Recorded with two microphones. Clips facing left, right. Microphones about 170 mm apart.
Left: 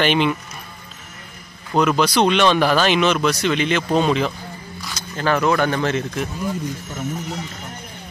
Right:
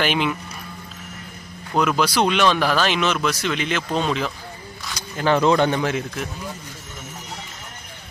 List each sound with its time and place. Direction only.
0.0 s speech: 5° right (ahead or behind)
1.8 s speech: 5° right (ahead or behind)
4.9 s speech: 15° right (ahead or behind)
5.8 s speech: 10° right (ahead or behind)